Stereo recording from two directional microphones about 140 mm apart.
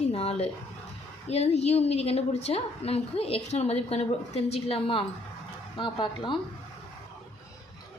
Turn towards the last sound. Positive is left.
turn(degrees=35)  # may be behind; listen again after turning